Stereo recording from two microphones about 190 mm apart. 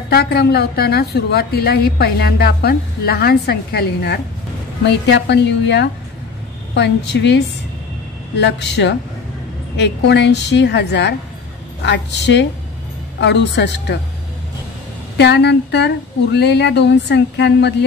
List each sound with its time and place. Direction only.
0.1 s a woman's voice: 55° left (ahead or behind)
15.1 s a woman's voice: 60° left (ahead or behind)